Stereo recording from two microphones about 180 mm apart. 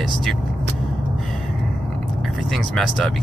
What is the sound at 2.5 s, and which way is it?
Speech, 5° left (ahead or behind).